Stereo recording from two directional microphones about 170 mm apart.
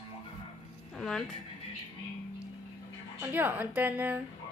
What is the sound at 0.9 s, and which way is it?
Speech, 5° left (ahead or behind).